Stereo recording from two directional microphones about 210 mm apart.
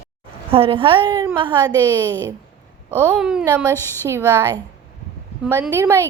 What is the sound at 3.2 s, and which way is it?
A woman's voice, 5° right (ahead or behind).